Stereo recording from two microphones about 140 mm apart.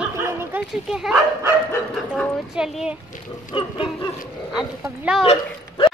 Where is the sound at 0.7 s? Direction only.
5° right (ahead or behind).